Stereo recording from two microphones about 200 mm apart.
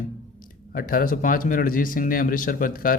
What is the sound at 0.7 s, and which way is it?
Speech, 45° left (ahead or behind).